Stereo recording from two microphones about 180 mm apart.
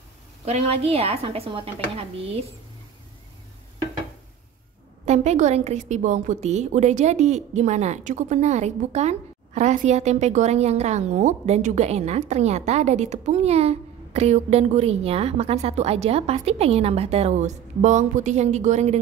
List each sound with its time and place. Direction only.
0.5 s a woman's voice: 35° right (ahead or behind)
5.0 s a woman's voice: 40° right (ahead or behind)